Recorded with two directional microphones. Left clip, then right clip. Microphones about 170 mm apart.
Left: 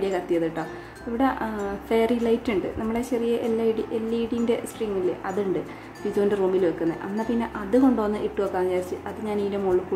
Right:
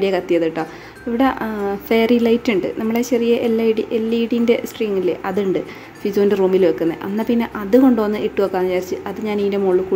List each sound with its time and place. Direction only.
0.0 s a woman's voice: 20° right (ahead or behind)